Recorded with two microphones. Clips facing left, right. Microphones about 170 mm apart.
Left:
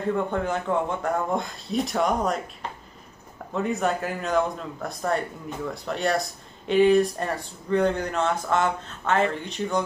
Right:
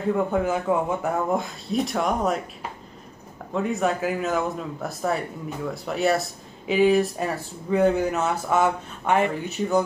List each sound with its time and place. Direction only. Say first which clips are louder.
0.1 s speech: right 3 dB; 5° right (ahead or behind)
3.5 s speech: right 1 dB; centre (ahead or behind)